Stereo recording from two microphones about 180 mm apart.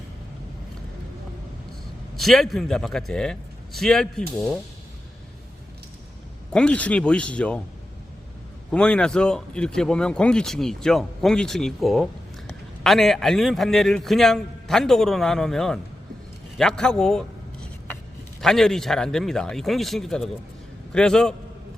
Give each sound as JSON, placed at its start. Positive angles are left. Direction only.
{"t": 2.1, "sound": "speech", "side_deg": 0}
{"t": 6.5, "sound": "speech", "side_deg": 5}
{"t": 8.7, "sound": "a man's voice", "side_deg": 5}